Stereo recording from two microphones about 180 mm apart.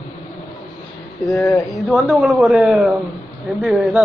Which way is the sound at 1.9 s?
5° right (ahead or behind).